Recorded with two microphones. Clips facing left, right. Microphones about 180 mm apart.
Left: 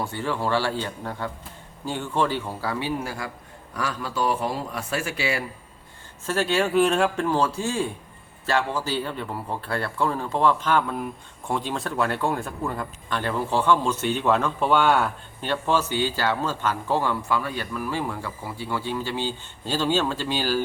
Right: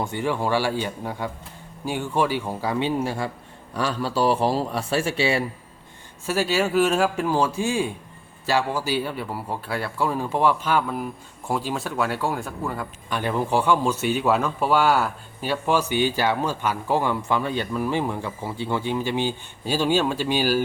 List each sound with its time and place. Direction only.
0.0 s a man's voice: 15° right (ahead or behind)
6.2 s speech: 5° right (ahead or behind)